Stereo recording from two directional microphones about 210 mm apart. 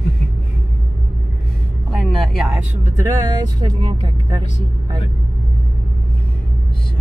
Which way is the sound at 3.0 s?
15° right (ahead or behind).